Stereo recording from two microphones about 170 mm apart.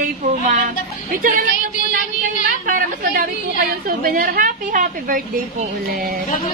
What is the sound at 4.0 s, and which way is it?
A woman's voice, 60° right (ahead or behind).